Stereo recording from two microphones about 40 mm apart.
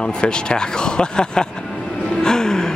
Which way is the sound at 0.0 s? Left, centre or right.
Left.